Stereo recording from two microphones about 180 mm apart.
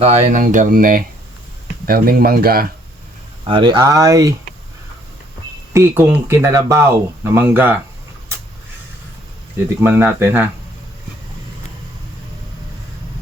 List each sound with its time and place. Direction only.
0.0 s speech: 40° right (ahead or behind); by 2.6 s 55° right (ahead or behind)
3.4 s speech: 30° right (ahead or behind)
5.7 s speech: 10° right (ahead or behind)
9.8 s speech: 10° right (ahead or behind)